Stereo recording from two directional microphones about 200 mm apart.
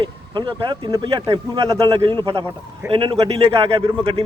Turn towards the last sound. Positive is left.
turn(degrees=-25)  # may be behind; listen again after turning